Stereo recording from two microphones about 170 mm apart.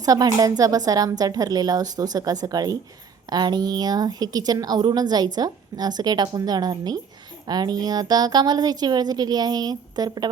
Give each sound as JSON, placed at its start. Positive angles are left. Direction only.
{"t": 0.0, "sound": "a woman's voice", "side_deg": -20}